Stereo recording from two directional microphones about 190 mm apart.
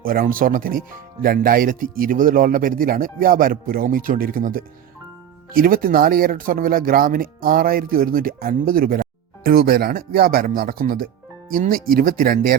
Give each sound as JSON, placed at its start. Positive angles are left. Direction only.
{"t": 0.0, "sound": "speech", "side_deg": -50}